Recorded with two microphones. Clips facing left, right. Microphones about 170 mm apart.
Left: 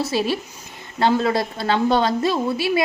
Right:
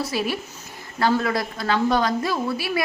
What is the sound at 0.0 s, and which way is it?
A woman's voice, 25° left (ahead or behind).